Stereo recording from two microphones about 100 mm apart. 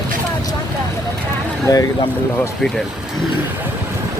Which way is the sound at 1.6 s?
35° left (ahead or behind).